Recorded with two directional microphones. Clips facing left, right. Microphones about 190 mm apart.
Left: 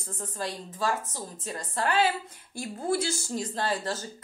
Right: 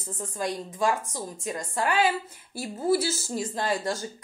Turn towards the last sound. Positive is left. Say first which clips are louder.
# right 2 dB
turn(degrees=-10)  # may be behind; listen again after turning